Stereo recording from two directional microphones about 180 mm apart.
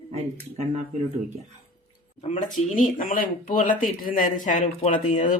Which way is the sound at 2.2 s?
40° left (ahead or behind).